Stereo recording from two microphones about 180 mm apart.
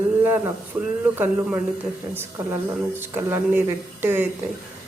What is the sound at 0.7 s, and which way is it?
Speech, 15° right (ahead or behind).